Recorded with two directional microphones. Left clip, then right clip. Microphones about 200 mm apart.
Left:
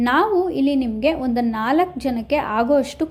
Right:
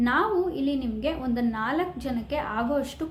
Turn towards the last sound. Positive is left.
turn(degrees=35)  # may be behind; listen again after turning